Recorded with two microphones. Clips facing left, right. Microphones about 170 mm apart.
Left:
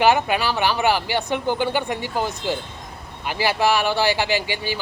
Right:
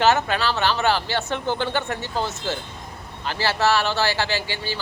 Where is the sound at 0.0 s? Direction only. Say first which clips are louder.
Left 2 dB; 15° left (ahead or behind).